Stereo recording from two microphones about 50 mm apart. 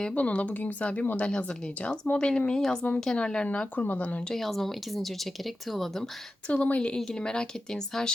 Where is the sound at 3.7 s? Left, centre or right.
Left.